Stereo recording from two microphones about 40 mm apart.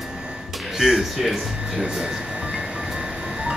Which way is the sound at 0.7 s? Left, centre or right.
Centre.